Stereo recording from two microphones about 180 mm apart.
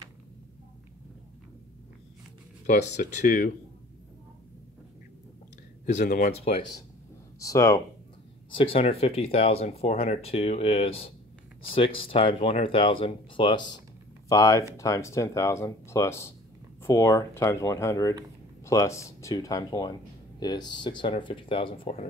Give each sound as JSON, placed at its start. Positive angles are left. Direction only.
{"t": 2.6, "sound": "speech", "side_deg": 40}
{"t": 6.0, "sound": "speech", "side_deg": 50}
{"t": 6.3, "sound": "speech", "side_deg": 35}
{"t": 7.3, "sound": "speech", "side_deg": 15}
{"t": 8.5, "sound": "speech", "side_deg": 30}